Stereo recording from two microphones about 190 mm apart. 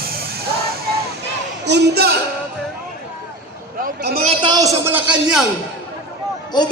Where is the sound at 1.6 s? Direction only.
60° right (ahead or behind).